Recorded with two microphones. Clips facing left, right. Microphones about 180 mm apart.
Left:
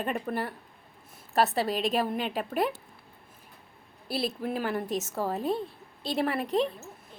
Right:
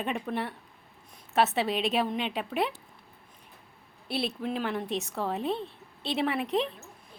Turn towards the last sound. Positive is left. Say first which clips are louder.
# left 1 dB
turn(degrees=0)  # may be behind; listen again after turning